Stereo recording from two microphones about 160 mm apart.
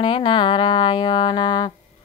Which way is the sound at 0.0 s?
35° left (ahead or behind).